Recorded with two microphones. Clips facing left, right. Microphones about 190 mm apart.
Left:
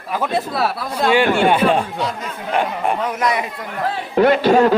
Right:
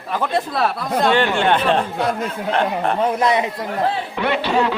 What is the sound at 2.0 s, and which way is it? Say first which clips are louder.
Speech: right 3 dB; 55° right (ahead or behind).